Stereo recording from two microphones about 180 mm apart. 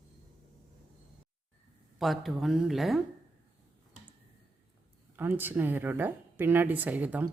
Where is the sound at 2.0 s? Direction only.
Centre (ahead or behind).